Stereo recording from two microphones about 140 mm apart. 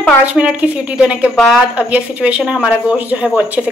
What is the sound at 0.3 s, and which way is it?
Speech, 10° right (ahead or behind).